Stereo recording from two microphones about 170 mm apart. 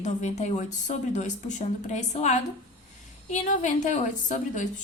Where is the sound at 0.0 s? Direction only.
45° left (ahead or behind).